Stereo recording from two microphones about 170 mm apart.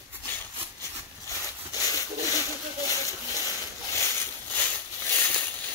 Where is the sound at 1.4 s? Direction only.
20° left (ahead or behind).